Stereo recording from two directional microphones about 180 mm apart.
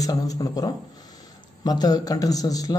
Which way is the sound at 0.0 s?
20° left (ahead or behind).